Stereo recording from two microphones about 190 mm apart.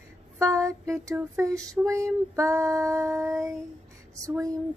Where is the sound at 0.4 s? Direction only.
15° right (ahead or behind).